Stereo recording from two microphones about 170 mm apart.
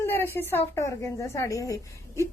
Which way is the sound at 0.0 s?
15° left (ahead or behind).